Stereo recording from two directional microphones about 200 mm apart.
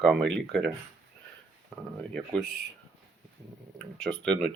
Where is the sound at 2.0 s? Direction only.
5° left (ahead or behind).